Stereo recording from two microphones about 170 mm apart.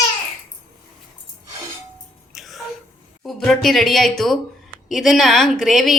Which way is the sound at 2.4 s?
Centre (ahead or behind).